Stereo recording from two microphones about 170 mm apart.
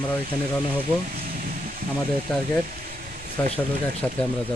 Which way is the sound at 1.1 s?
60° right (ahead or behind).